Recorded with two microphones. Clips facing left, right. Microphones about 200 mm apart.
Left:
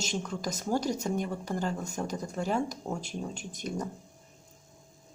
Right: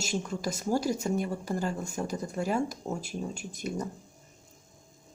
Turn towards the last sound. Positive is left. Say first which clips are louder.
# right 1 dB
turn(degrees=-5)  # may be behind; listen again after turning